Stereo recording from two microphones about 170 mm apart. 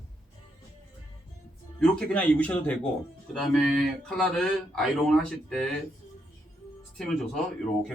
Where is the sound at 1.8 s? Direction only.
5° left (ahead or behind).